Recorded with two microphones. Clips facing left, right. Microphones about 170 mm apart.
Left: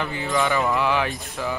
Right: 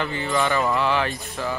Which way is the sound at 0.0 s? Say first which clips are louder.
Right 1 dB; 10° left (ahead or behind).